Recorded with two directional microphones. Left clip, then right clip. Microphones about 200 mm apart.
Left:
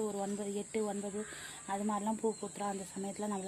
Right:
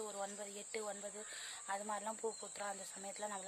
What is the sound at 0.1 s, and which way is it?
Speech, centre (ahead or behind).